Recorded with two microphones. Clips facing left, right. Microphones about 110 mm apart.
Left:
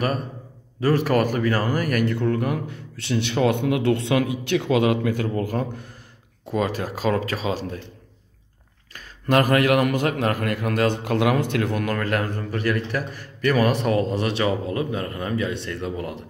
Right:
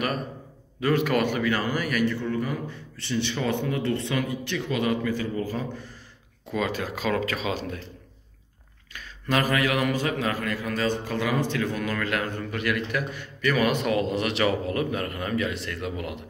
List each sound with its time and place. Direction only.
0.7 s speech: 35° left (ahead or behind); by 5.9 s 55° left (ahead or behind)
6.5 s a man's voice: 40° left (ahead or behind)
8.9 s a man's voice: 50° left (ahead or behind)